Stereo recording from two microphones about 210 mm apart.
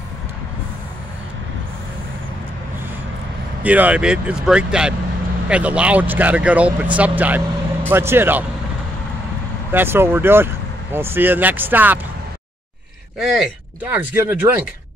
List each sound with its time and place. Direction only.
3.6 s speech: 5° right (ahead or behind)
9.7 s speech: 10° right (ahead or behind)
13.2 s speech: centre (ahead or behind)